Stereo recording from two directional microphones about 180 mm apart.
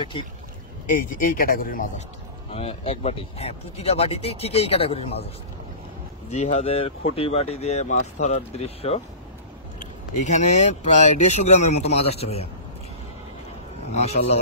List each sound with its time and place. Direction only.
1.2 s speech: 50° left (ahead or behind)
2.5 s speech: 35° left (ahead or behind)
6.3 s speech: 40° left (ahead or behind)
10.2 s speech: 40° left (ahead or behind)
13.9 s speech: 35° left (ahead or behind)